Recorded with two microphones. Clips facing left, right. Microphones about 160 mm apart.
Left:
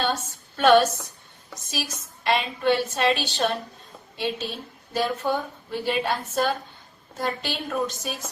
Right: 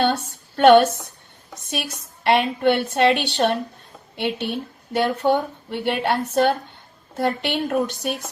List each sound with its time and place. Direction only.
0.0 s a woman's voice: 60° right (ahead or behind)